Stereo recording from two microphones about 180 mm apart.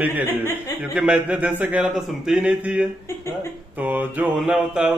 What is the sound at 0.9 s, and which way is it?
Speech, 10° right (ahead or behind).